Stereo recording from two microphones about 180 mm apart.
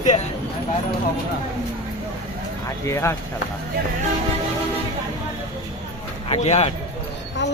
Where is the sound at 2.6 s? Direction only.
15° left (ahead or behind).